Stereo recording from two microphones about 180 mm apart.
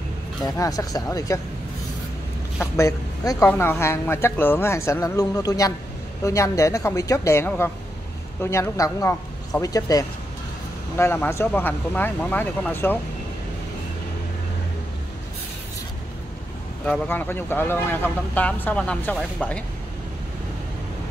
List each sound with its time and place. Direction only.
0.5 s a man's voice: 20° left (ahead or behind)
2.6 s a man's voice: 15° left (ahead or behind)
16.8 s speech: 5° left (ahead or behind)